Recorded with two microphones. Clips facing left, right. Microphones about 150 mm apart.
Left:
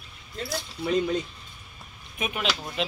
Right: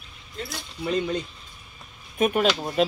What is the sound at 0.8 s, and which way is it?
Speech, centre (ahead or behind).